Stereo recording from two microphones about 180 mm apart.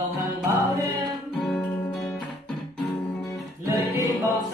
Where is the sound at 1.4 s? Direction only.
5° left (ahead or behind).